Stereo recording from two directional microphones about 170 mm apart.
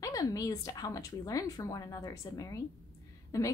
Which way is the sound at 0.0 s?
20° left (ahead or behind).